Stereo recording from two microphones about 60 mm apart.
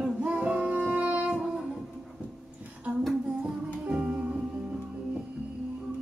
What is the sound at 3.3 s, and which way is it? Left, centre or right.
Music, centre.